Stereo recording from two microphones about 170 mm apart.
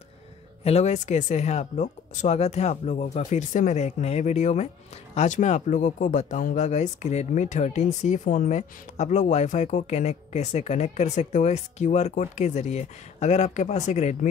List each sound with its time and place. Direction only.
0.7 s speech: 40° left (ahead or behind)